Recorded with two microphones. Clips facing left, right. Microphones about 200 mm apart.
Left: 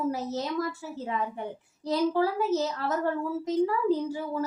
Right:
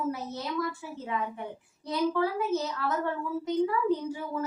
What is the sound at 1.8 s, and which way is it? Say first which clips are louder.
A woman's voice: left 2 dB; 35° left (ahead or behind).